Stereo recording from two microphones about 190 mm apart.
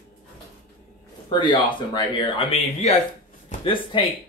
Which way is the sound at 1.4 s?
25° left (ahead or behind).